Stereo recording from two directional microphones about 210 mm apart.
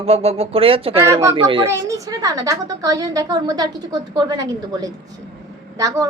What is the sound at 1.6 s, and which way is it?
A woman's voice, 15° right (ahead or behind).